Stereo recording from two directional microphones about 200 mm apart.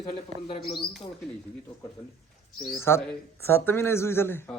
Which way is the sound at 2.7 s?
10° left (ahead or behind).